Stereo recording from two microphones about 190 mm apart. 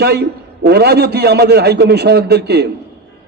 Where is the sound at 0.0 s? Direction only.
60° right (ahead or behind).